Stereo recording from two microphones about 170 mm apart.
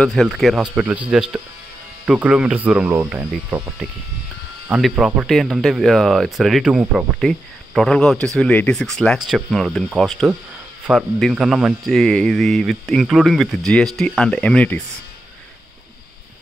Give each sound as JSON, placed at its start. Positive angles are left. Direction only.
{"t": 0.0, "sound": "speech", "side_deg": 0}